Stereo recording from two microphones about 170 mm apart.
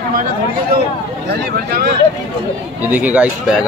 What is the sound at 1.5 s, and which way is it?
Speech, 65° right (ahead or behind).